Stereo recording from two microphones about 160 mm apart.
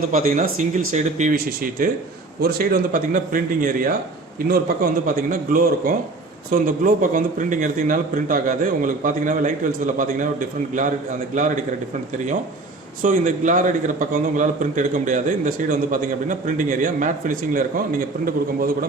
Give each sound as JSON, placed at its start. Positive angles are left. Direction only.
{"t": 0.1, "sound": "a man's voice", "side_deg": -55}
{"t": 1.4, "sound": "a man's voice", "side_deg": -65}
{"t": 4.4, "sound": "a man's voice", "side_deg": -70}
{"t": 5.0, "sound": "a man's voice", "side_deg": -55}
{"t": 13.0, "sound": "a man's voice", "side_deg": -55}